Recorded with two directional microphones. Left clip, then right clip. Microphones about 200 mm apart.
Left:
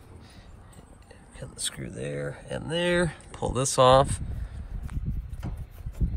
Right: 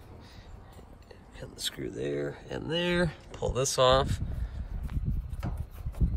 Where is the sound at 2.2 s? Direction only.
55° right (ahead or behind).